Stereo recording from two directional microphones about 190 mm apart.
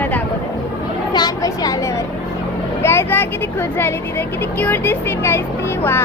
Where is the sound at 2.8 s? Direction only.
15° left (ahead or behind).